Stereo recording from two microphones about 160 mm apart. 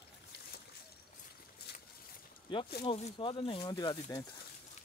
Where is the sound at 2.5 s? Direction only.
30° left (ahead or behind).